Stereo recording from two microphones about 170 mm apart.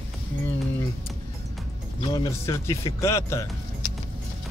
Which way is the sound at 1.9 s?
25° left (ahead or behind).